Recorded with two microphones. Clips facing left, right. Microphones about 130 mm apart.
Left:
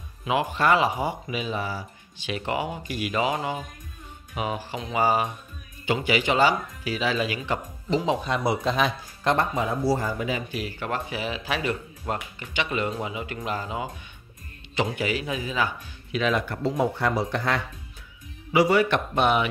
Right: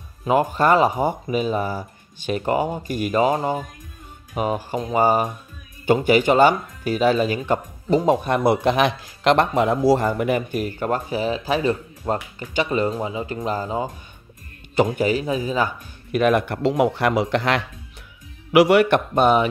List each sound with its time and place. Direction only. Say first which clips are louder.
0.2 s speech: right 5 dB; 45° right (ahead or behind); by 17.6 s 90° right
18.5 s speech: right 6 dB; 75° right (ahead or behind); by 19.4 s 40° right (ahead or behind)